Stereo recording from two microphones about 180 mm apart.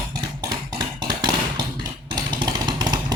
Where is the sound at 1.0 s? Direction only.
25° right (ahead or behind).